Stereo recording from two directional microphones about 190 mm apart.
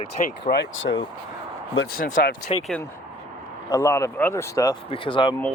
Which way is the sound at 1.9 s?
45° left (ahead or behind).